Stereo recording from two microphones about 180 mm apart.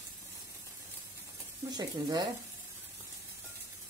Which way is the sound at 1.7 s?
25° right (ahead or behind).